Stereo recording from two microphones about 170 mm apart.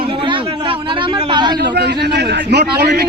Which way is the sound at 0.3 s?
30° right (ahead or behind).